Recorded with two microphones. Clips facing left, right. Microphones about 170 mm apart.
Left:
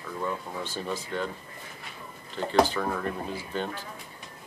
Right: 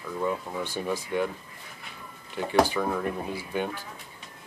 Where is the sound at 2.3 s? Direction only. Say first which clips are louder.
Even; 10° right (ahead or behind).